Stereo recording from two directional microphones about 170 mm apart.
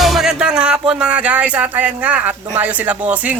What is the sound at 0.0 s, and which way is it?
Music, centre (ahead or behind).